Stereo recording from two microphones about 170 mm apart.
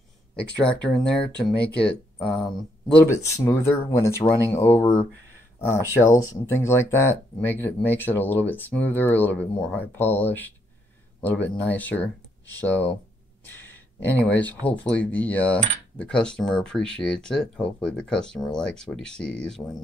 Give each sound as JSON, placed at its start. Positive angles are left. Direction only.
{"t": 0.4, "sound": "cutlery", "side_deg": 5}
{"t": 3.1, "sound": "speech", "side_deg": 15}
{"t": 6.0, "sound": "speech", "side_deg": 15}
{"t": 14.2, "sound": "speech", "side_deg": 10}
{"t": 14.9, "sound": "cutlery", "side_deg": 10}